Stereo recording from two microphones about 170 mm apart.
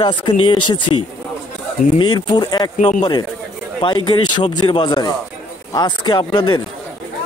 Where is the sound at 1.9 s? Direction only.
25° left (ahead or behind).